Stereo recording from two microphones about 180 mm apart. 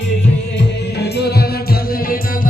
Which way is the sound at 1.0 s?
65° left (ahead or behind).